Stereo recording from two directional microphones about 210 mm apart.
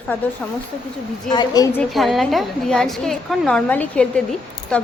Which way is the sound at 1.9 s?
Centre (ahead or behind).